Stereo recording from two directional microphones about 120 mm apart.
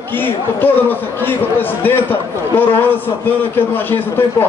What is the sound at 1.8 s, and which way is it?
A man's voice, 15° left (ahead or behind).